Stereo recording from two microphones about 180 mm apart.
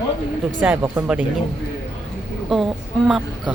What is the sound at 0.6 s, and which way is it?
Speech, 10° right (ahead or behind).